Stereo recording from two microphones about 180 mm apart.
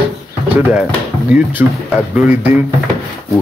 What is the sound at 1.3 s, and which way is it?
Speech, 10° right (ahead or behind).